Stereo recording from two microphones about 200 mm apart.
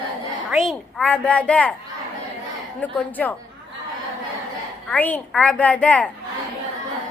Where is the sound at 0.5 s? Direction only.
Centre (ahead or behind).